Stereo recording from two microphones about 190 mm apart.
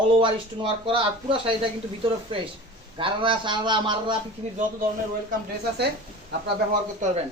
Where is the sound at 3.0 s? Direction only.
25° right (ahead or behind).